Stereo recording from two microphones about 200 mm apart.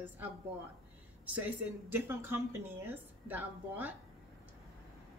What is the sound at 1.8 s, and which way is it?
Speech, 10° right (ahead or behind).